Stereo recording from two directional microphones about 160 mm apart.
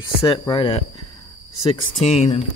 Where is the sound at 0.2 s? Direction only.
30° left (ahead or behind).